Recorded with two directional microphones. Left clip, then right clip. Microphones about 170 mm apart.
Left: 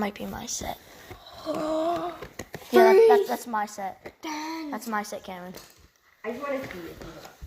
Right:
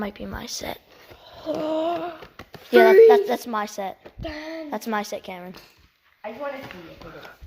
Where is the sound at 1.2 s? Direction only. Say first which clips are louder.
Right 3 dB; 35° right (ahead or behind).